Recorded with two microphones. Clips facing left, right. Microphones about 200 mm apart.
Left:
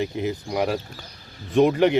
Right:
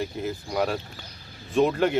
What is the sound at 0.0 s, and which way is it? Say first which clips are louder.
Speech: left 4 dB; 15° left (ahead or behind).